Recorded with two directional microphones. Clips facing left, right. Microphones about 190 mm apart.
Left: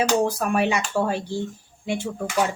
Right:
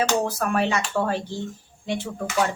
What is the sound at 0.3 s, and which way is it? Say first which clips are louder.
Speech: left 1 dB; 15° left (ahead or behind).